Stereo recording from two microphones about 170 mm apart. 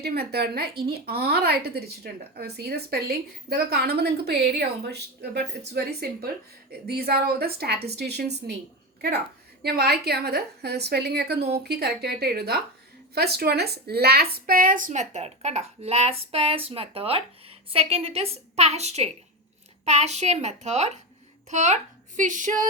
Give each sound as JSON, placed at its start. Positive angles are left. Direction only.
{"t": 0.0, "sound": "a woman's voice", "side_deg": -70}